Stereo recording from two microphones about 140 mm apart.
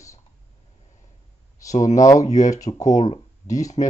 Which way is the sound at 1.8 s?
25° left (ahead or behind).